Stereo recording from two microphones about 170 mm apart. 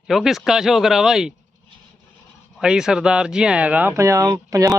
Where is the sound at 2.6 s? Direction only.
5° right (ahead or behind).